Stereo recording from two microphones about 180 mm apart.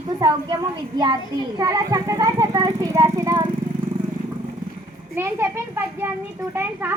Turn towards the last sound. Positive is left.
turn(degrees=-15)  # may be behind; listen again after turning